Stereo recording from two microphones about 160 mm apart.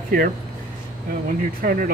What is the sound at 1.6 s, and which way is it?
Speech, 65° right (ahead or behind).